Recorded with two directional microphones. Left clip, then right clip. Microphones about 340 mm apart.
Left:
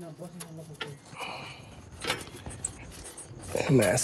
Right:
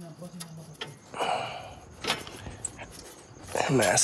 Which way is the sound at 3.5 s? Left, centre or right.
Left.